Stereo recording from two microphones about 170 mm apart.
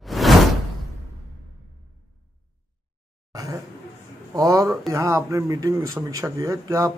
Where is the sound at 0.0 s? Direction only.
Centre (ahead or behind).